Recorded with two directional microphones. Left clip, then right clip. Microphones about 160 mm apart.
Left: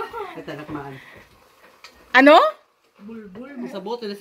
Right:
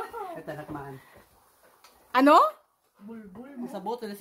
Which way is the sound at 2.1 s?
5° right (ahead or behind).